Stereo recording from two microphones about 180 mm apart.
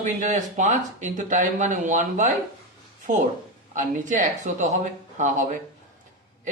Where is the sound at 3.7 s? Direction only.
45° right (ahead or behind).